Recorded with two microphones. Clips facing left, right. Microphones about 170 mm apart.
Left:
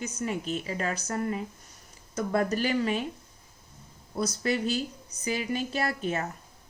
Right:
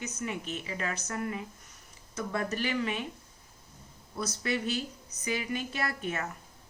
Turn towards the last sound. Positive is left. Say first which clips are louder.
# left 4 dB
turn(degrees=30)  # may be behind; listen again after turning